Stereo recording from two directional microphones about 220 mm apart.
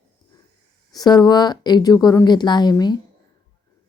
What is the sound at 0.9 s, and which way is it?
Speech, 15° left (ahead or behind).